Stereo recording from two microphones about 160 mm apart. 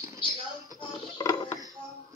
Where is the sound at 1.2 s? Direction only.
30° left (ahead or behind).